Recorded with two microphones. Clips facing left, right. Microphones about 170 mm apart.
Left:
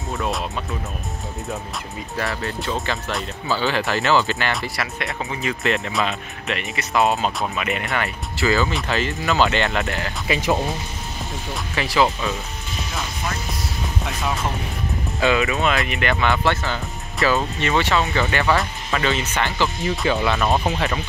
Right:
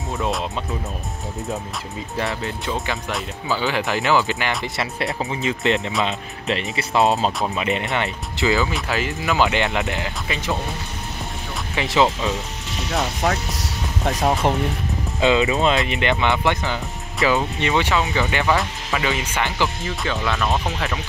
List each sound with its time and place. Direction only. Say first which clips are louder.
2.4 s speech: left 1 dB; 15° right (ahead or behind)
10.2 s speech: left 8 dB; 10° left (ahead or behind)
11.7 s speech: right 1 dB; 20° right (ahead or behind)
12.7 s speech: right 6 dB; 70° right (ahead or behind)
14.4 s speech: right 7 dB; 65° right (ahead or behind)
15.1 s speech: right 2 dB; 20° right (ahead or behind)
20.1 s speech: left 3 dB; 5° left (ahead or behind)